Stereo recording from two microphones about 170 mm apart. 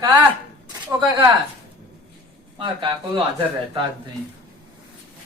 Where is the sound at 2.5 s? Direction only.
30° right (ahead or behind).